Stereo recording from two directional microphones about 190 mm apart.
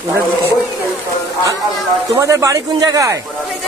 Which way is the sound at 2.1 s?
15° right (ahead or behind).